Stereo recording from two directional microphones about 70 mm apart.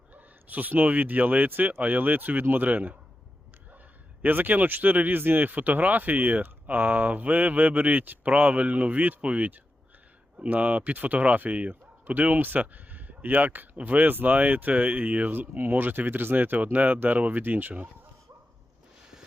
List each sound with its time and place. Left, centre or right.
0.1 s speech: right
4.2 s speech: right